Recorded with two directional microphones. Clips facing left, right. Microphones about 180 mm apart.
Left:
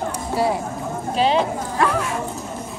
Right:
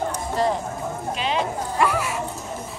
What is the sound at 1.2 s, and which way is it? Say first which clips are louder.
Speech: left 8 dB; 35° left (ahead or behind).